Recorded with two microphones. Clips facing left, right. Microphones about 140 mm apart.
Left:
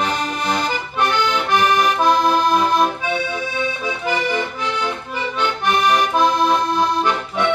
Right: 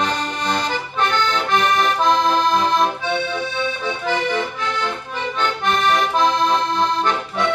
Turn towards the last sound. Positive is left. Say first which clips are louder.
# left 1 dB
turn(degrees=10)  # may be behind; listen again after turning